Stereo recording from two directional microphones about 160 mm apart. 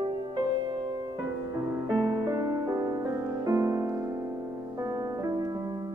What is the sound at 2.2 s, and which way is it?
Music, 20° right (ahead or behind).